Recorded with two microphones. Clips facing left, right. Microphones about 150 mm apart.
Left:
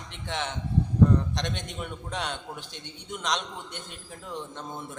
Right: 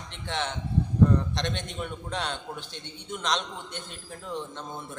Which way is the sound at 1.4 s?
10° left (ahead or behind).